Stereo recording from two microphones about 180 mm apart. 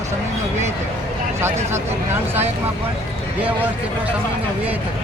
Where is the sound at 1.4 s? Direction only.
15° right (ahead or behind).